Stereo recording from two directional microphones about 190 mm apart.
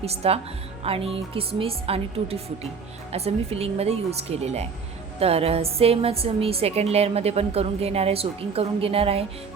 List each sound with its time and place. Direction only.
0.0 s a woman's voice: 30° right (ahead or behind)